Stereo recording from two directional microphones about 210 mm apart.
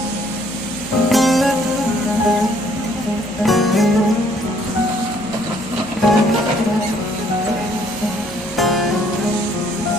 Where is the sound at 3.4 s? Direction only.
Centre (ahead or behind).